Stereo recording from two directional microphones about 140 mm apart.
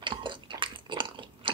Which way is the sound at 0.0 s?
35° right (ahead or behind).